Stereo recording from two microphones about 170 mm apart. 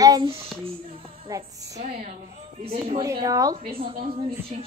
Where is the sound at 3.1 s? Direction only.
20° right (ahead or behind).